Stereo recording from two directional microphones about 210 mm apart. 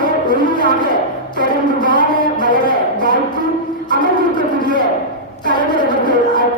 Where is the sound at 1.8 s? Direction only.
20° left (ahead or behind).